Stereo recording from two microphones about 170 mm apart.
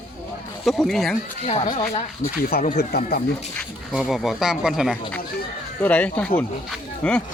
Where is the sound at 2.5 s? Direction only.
60° left (ahead or behind).